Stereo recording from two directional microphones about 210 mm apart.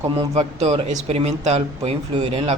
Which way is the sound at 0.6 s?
30° right (ahead or behind).